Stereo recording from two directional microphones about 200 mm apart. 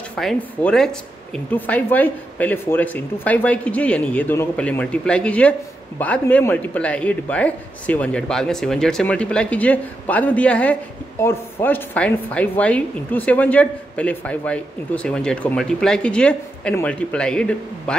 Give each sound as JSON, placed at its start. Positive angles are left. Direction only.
{"t": 0.1, "sound": "a man's voice", "side_deg": 5}